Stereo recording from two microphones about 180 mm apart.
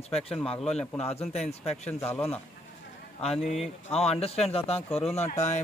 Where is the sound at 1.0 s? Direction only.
35° left (ahead or behind).